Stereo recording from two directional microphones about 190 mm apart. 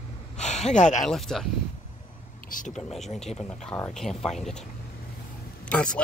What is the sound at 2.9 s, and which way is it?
Speech, centre (ahead or behind).